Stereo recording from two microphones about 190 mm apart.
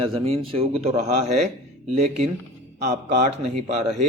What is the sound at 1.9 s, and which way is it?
Speech, 35° right (ahead or behind).